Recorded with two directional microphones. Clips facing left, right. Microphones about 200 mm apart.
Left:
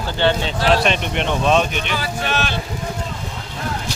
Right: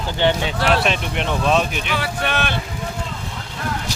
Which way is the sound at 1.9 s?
60° right (ahead or behind).